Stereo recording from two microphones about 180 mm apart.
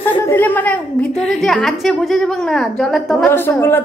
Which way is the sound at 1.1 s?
35° left (ahead or behind).